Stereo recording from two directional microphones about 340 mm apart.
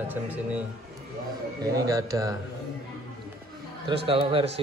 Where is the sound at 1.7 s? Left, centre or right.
Centre.